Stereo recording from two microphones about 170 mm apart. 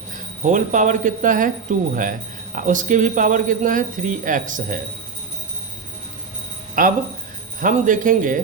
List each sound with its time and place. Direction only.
0.4 s a man's voice: 45° right (ahead or behind)
6.8 s a man's voice: 55° right (ahead or behind)